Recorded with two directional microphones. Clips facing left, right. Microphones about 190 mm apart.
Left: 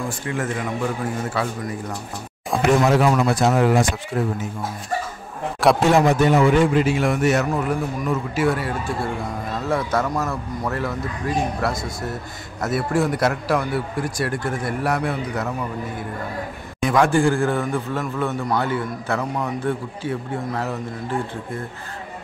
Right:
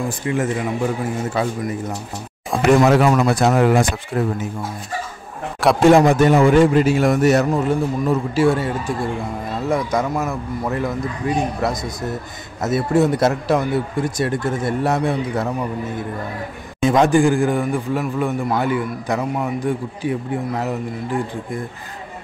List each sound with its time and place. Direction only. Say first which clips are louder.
0.3 s speech: right 5 dB; 20° right (ahead or behind)
2.8 s speech: right 3 dB; 60° right (ahead or behind)
5.9 s a man's voice: right 8 dB; 50° right (ahead or behind)
7.4 s a man's voice: right 4 dB; 25° right (ahead or behind)
16.8 s a man's voice: right 3 dB; 20° right (ahead or behind)